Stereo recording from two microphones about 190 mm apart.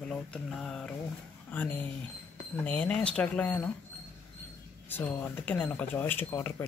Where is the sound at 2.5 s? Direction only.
5° left (ahead or behind).